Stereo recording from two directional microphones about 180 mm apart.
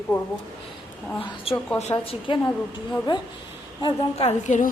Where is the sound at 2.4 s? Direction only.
10° left (ahead or behind).